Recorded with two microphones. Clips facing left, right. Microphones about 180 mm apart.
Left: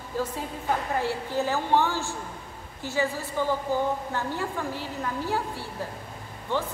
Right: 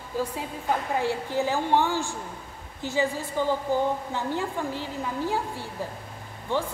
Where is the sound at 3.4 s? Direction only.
15° right (ahead or behind).